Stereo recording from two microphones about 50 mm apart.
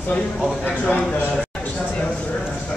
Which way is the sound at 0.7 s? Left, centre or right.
Left.